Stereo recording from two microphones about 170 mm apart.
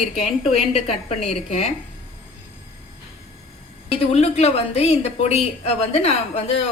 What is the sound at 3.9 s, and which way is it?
A woman's voice, 35° left (ahead or behind).